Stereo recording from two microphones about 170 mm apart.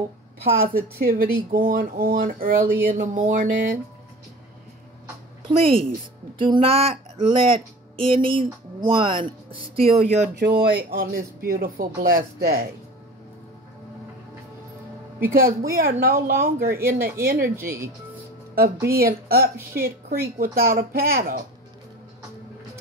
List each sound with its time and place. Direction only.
0.4 s speech: 60° right (ahead or behind)
5.5 s speech: 35° right (ahead or behind)
10.4 s speech: 60° right (ahead or behind)
15.3 s speech: 60° right (ahead or behind)
17.4 s speech: 15° right (ahead or behind)
18.9 s speech: 60° right (ahead or behind)
19.5 s speech: 15° right (ahead or behind)
20.3 s speech: 60° right (ahead or behind)